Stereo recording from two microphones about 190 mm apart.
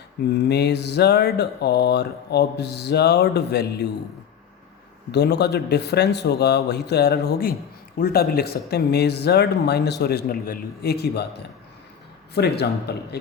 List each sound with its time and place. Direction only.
0.4 s speech: 60° left (ahead or behind)
5.1 s speech: 60° left (ahead or behind)